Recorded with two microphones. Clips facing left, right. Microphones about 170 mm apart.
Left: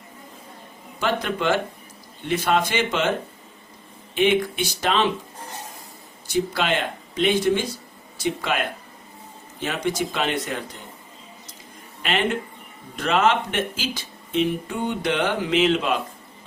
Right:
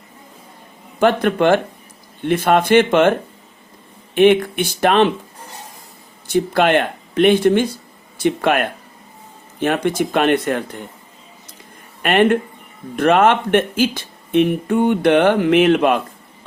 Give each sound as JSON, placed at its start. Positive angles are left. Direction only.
{"t": 0.9, "sound": "speech", "side_deg": -55}
{"t": 6.2, "sound": "speech", "side_deg": -55}
{"t": 12.0, "sound": "speech", "side_deg": -55}